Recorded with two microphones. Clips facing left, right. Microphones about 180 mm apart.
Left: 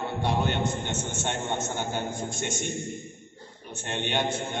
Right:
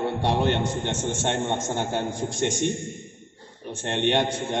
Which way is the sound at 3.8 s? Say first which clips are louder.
Right 7 dB; 75° right (ahead or behind).